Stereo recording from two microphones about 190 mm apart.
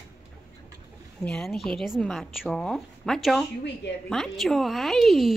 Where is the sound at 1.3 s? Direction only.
Centre (ahead or behind).